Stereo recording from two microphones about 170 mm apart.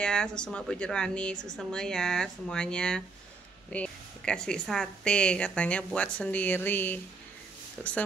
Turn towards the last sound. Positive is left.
turn(degrees=5)  # may be behind; listen again after turning